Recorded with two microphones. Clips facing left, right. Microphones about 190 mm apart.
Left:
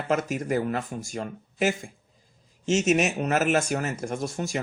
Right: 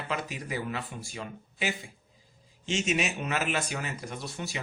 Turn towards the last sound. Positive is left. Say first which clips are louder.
# left 8 dB
turn(degrees=45)  # may be behind; listen again after turning